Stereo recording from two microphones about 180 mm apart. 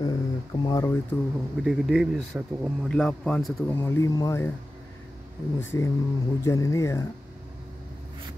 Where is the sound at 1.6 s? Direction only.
5° right (ahead or behind).